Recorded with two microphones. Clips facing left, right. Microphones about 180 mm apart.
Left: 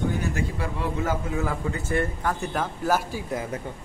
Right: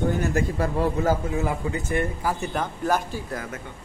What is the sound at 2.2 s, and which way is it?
A man's voice, 5° right (ahead or behind).